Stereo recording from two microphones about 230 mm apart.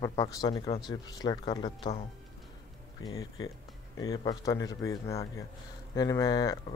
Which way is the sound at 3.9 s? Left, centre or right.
Centre.